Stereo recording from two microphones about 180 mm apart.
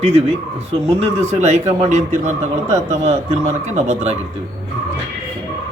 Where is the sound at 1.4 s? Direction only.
40° right (ahead or behind).